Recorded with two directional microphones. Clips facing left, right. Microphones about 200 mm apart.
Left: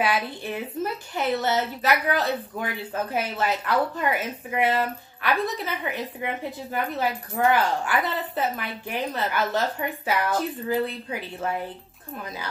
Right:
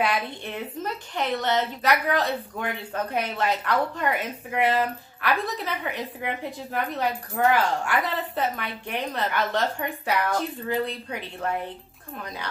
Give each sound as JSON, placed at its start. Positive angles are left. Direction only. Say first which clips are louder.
{"t": 0.0, "sound": "a woman's voice", "louder": "left 1 dB", "side_deg": 5}